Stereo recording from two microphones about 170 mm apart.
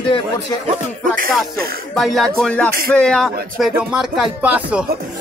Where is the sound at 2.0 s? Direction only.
Centre (ahead or behind).